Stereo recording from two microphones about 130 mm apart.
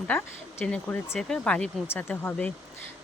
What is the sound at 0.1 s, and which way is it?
Speech, 10° left (ahead or behind).